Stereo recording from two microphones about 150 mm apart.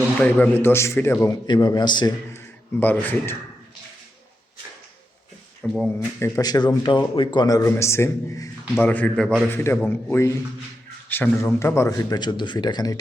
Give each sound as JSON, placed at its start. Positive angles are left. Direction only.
{"t": 0.2, "sound": "a man's voice", "side_deg": 10}
{"t": 1.5, "sound": "speech", "side_deg": 30}
{"t": 2.3, "sound": "speech", "side_deg": 15}
{"t": 5.6, "sound": "speech", "side_deg": 0}
{"t": 6.1, "sound": "a man's voice", "side_deg": 20}